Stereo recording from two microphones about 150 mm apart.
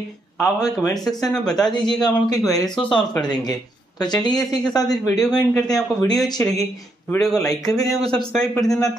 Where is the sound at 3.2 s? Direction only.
25° left (ahead or behind).